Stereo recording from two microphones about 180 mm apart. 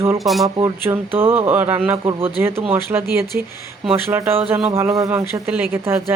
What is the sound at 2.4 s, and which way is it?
A woman's voice, 15° right (ahead or behind).